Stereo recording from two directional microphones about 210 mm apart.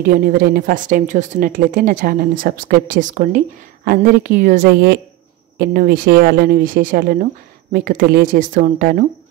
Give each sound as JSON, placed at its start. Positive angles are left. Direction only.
{"t": 0.0, "sound": "a woman's voice", "side_deg": -45}